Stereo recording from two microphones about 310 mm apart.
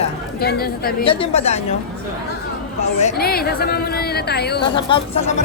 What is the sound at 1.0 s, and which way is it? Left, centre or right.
Speech, centre.